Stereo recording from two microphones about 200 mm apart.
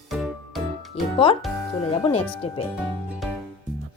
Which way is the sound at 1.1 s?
25° left (ahead or behind).